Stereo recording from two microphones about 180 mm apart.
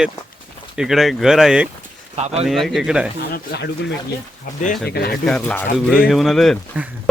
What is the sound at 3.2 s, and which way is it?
Speech, 65° left (ahead or behind).